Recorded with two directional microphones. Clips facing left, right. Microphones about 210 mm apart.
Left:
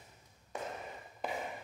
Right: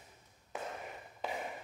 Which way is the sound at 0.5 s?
5° right (ahead or behind).